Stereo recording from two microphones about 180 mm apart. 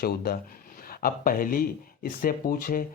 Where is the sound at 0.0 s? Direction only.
60° left (ahead or behind).